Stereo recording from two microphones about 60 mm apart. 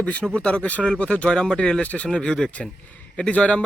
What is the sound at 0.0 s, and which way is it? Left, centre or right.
Speech, centre.